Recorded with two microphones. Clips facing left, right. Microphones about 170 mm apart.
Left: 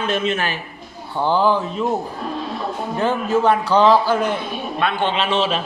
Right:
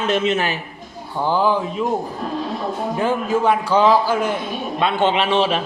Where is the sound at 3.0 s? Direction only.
10° right (ahead or behind).